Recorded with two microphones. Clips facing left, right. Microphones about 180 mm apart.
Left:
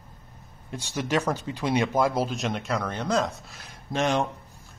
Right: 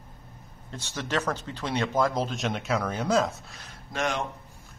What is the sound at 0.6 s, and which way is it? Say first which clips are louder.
Speech: left 5 dB; 10° left (ahead or behind).